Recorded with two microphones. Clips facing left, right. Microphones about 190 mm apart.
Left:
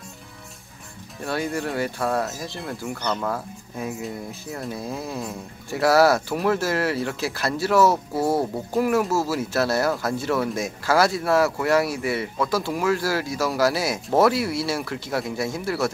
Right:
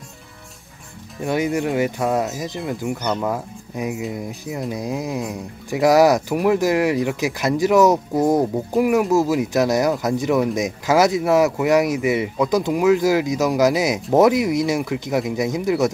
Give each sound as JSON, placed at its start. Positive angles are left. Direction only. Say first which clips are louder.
{"t": 1.2, "sound": "speech", "louder": "right 6 dB", "side_deg": -20}